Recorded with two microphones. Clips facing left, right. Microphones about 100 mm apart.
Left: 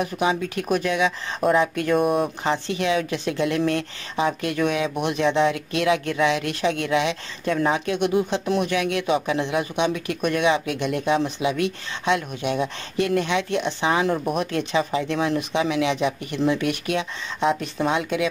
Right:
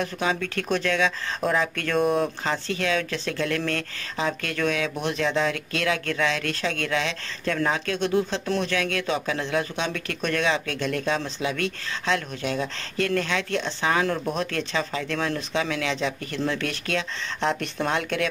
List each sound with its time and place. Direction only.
0.0 s speech: 15° left (ahead or behind)